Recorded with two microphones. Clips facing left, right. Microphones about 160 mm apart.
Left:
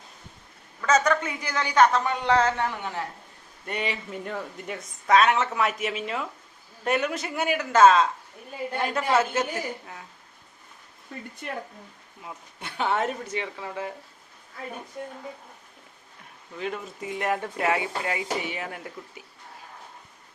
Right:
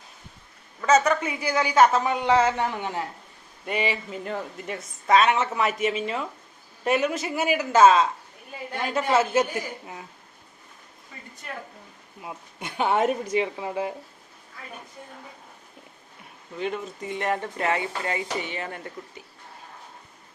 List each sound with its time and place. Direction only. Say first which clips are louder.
0.8 s a woman's voice: right 2 dB; 10° right (ahead or behind)
3.7 s speech: right 3 dB; 5° right (ahead or behind)
9.3 s a woman's voice: right 4 dB; 15° right (ahead or behind)
12.2 s a woman's voice: right 3 dB; 15° right (ahead or behind)
16.6 s speech: right 3 dB; centre (ahead or behind)